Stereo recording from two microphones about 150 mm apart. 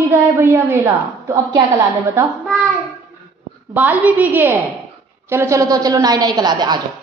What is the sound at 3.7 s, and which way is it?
A woman's voice, 10° right (ahead or behind).